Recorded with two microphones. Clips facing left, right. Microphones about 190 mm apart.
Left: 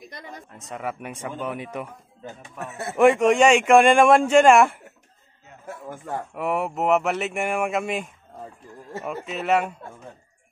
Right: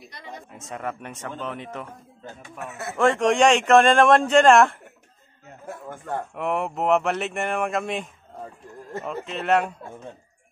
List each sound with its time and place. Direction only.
0.5 s a man's voice: centre (ahead or behind)